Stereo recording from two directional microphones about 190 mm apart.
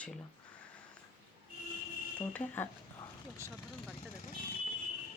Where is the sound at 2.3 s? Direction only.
10° left (ahead or behind).